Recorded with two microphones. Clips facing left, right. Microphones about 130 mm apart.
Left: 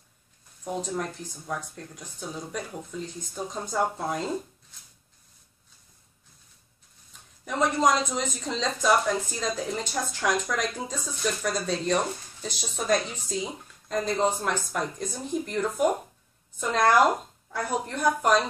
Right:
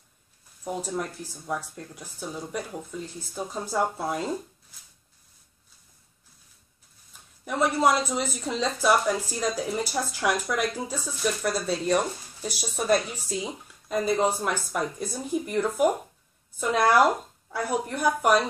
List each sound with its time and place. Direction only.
0.7 s speech: 5° right (ahead or behind)
7.4 s a woman's voice: 5° right (ahead or behind)